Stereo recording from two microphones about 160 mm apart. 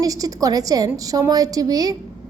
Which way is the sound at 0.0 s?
20° right (ahead or behind).